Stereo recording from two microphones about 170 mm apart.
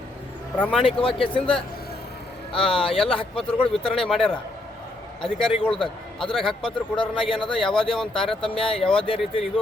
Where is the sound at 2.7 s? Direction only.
30° left (ahead or behind).